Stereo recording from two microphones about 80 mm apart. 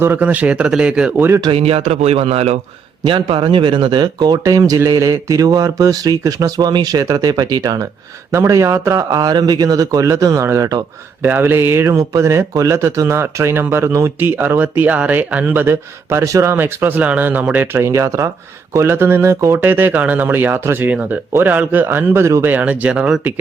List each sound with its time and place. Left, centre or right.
0.0 s a man's voice: right
1.5 s a man's voice: right
3.0 s speech: right
8.3 s speech: right
11.2 s speech: right
11.9 s speech: right
14.2 s speech: right
15.6 s speech: right
17.7 s speech: right
22.4 s a man's voice: centre